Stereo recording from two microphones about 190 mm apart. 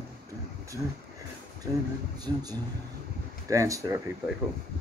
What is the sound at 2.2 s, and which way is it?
Speech, 20° right (ahead or behind).